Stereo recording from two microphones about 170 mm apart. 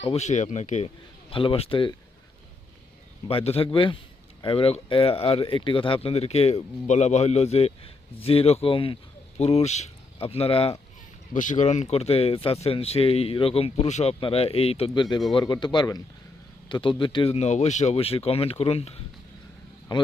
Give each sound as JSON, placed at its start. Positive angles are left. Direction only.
{"t": 0.0, "sound": "speech", "side_deg": 40}
{"t": 1.3, "sound": "speech", "side_deg": 30}
{"t": 3.2, "sound": "speech", "side_deg": 35}
{"t": 11.3, "sound": "a man's voice", "side_deg": 45}